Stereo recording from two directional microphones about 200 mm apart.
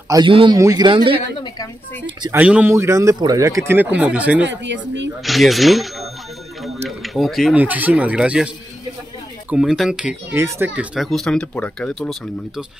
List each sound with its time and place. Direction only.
0.1 s speech: 25° right (ahead or behind)
2.3 s speech: 10° right (ahead or behind)
4.5 s speech: 60° right (ahead or behind)
5.2 s speech: centre (ahead or behind)
9.5 s speech: 5° right (ahead or behind)
11.0 s speech: centre (ahead or behind)